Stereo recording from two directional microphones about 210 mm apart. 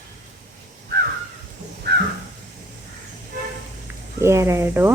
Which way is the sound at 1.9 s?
55° right (ahead or behind).